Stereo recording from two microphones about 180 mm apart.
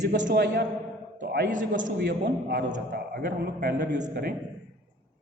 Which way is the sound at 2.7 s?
55° right (ahead or behind).